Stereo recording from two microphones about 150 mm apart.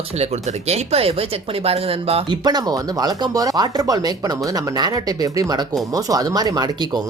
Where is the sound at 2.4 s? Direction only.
25° right (ahead or behind).